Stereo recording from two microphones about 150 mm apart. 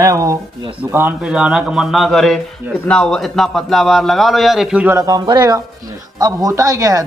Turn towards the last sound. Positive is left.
turn(degrees=-20)  # may be behind; listen again after turning